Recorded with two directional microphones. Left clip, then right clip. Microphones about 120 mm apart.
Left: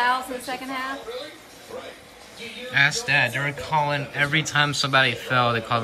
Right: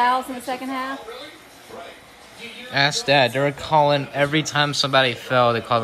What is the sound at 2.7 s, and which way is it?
Speech, 30° right (ahead or behind).